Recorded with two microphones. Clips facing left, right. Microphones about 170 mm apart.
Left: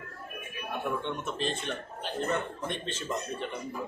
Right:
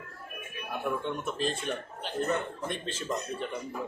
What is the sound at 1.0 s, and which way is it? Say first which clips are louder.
Speech: right 1 dB; 5° right (ahead or behind).